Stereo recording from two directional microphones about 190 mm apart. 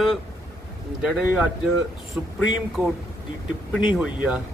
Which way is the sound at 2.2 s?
5° right (ahead or behind).